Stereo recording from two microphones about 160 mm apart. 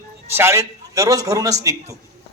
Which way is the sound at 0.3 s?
15° right (ahead or behind).